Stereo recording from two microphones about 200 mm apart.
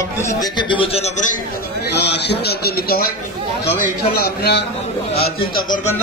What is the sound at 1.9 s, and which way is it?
A man's voice, 55° left (ahead or behind).